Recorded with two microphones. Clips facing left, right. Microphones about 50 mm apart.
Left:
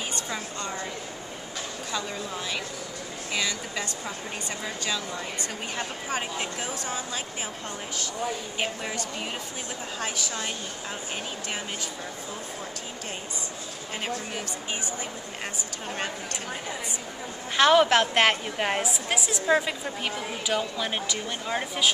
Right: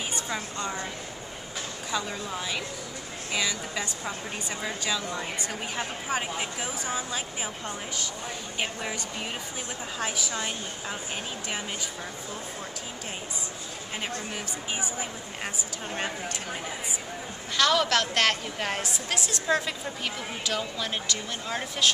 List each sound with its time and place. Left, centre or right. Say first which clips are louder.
0.1 s a woman's voice: even; centre
1.9 s a woman's voice: right 2 dB; centre
8.5 s a woman's voice: left 1 dB; centre
17.6 s a woman's voice: left 5 dB; left
19.1 s speech: left 3 dB; centre